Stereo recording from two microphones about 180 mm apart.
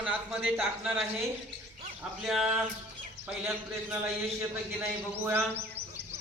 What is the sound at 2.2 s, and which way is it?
Speech, centre (ahead or behind).